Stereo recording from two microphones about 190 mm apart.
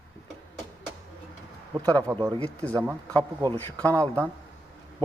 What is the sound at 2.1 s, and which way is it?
Speech, 15° right (ahead or behind).